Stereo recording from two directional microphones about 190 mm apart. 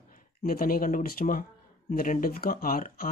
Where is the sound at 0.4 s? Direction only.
50° left (ahead or behind).